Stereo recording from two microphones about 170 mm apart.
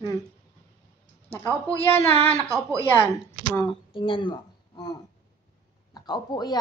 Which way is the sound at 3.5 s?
30° left (ahead or behind).